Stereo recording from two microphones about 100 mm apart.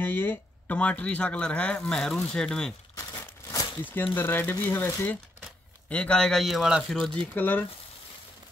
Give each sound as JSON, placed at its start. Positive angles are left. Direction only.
{"t": 0.0, "sound": "speech", "side_deg": 20}
{"t": 3.8, "sound": "speech", "side_deg": 20}
{"t": 5.9, "sound": "speech", "side_deg": 10}
{"t": 7.3, "sound": "speech", "side_deg": 20}